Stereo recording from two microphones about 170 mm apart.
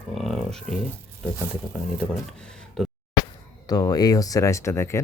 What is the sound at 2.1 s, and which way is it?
Speech, 5° left (ahead or behind).